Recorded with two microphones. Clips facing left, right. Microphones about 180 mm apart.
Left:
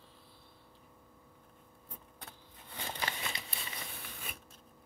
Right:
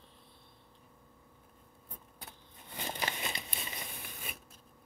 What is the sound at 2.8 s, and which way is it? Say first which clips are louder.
Crumpling: right 2 dB; 20° right (ahead or behind).